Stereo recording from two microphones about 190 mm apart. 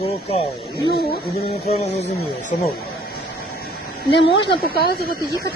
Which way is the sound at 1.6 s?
35° left (ahead or behind).